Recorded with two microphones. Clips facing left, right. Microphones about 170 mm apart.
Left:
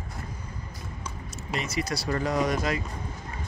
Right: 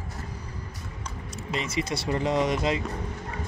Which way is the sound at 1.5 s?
25° right (ahead or behind).